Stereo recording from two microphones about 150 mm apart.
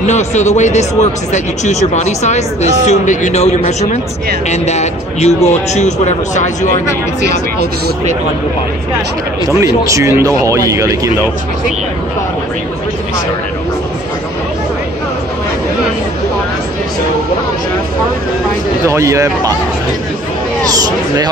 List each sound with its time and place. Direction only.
0.0 s speech: 50° left (ahead or behind)
9.8 s speech: 20° right (ahead or behind)
18.9 s speech: 20° right (ahead or behind)
20.6 s speech: 25° right (ahead or behind)